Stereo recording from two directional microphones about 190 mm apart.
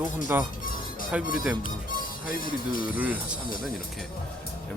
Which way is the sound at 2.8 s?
5° right (ahead or behind).